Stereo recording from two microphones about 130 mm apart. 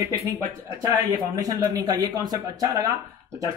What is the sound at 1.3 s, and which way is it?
Speech, 30° right (ahead or behind).